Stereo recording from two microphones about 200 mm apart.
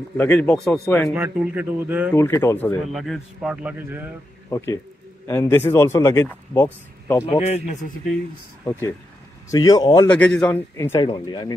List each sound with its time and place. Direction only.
0.2 s speech: 10° left (ahead or behind)
1.1 s speech: 10° right (ahead or behind)
2.1 s speech: 10° left (ahead or behind)
2.9 s a man's voice: centre (ahead or behind)
4.5 s speech: 15° left (ahead or behind)
7.2 s a man's voice: 30° left (ahead or behind)
8.6 s speech: 15° left (ahead or behind)
10.0 s speech: 5° left (ahead or behind); by 11.5 s 20° left (ahead or behind)